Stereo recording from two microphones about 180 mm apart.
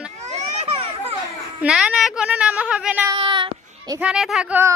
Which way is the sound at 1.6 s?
5° right (ahead or behind).